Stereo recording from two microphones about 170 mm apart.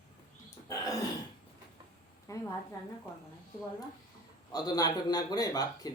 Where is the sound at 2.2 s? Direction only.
20° left (ahead or behind).